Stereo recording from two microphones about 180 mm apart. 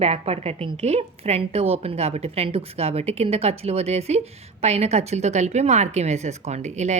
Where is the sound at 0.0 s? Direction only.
35° right (ahead or behind).